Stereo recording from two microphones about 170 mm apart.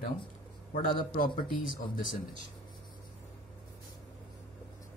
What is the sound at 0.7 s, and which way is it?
Speech, 55° left (ahead or behind).